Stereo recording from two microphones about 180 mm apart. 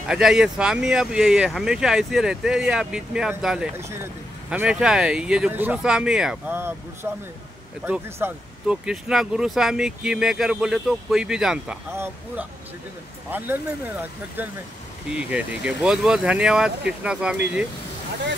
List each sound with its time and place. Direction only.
0.1 s speech: 5° right (ahead or behind)